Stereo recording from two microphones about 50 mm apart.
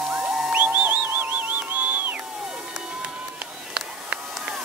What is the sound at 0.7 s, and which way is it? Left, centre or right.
Music, right.